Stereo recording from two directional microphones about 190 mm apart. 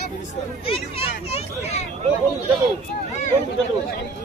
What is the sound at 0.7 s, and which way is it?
Speech, 35° left (ahead or behind).